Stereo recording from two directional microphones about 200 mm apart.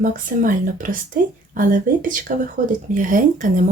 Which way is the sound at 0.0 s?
40° right (ahead or behind).